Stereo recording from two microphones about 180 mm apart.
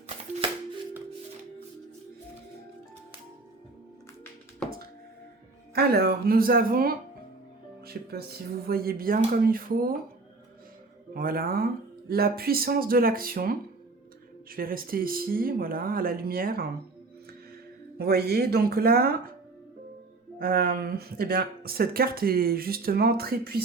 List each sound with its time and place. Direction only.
5.7 s speech: 60° right (ahead or behind)
11.1 s speech: 55° right (ahead or behind)
17.9 s speech: 60° right (ahead or behind)
20.4 s speech: 55° right (ahead or behind)